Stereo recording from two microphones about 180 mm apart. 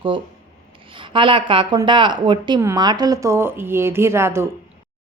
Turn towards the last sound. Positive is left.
turn(degrees=-15)  # may be behind; listen again after turning